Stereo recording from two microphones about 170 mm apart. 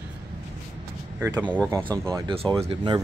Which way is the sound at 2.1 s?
30° right (ahead or behind).